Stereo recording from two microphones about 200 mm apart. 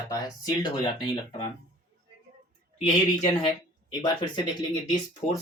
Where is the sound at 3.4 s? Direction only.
20° left (ahead or behind).